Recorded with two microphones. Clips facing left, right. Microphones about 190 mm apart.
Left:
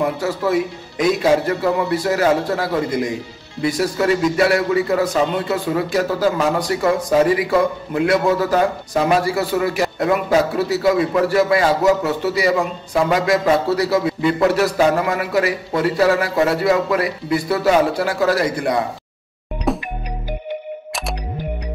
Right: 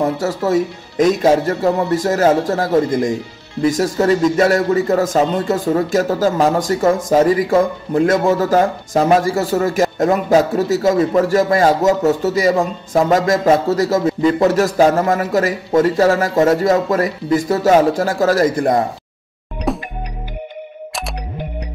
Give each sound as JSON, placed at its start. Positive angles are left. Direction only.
{"t": 0.0, "sound": "speech", "side_deg": -45}
{"t": 19.7, "sound": "music", "side_deg": 0}